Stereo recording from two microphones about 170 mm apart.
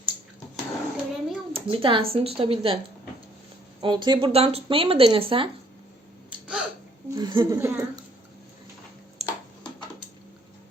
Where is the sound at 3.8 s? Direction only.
25° right (ahead or behind).